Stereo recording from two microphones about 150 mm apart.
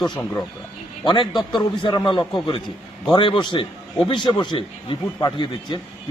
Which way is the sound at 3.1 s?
30° left (ahead or behind).